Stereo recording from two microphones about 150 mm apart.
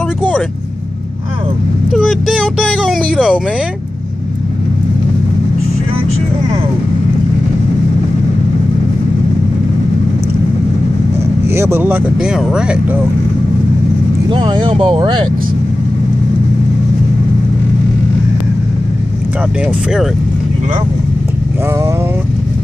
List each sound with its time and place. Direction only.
1.9 s speech: centre (ahead or behind)
11.4 s speech: 15° right (ahead or behind)
14.3 s speech: 35° right (ahead or behind)